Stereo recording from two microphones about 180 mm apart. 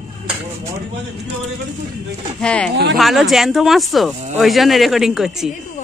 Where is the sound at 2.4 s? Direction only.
5° left (ahead or behind).